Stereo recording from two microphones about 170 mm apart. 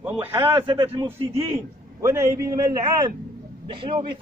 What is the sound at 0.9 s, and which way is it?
Speech, 30° right (ahead or behind).